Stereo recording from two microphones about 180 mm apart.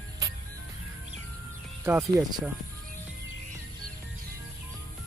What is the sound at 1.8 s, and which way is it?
Speech, 15° right (ahead or behind).